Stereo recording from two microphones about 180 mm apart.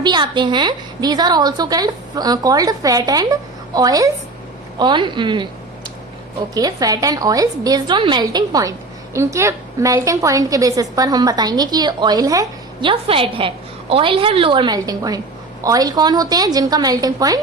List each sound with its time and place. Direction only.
0.0 s a woman's voice: 25° right (ahead or behind)
6.5 s a woman's voice: 20° right (ahead or behind)